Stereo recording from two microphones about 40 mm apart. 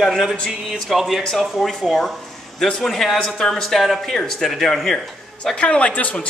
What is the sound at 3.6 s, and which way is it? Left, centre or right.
Speech, centre.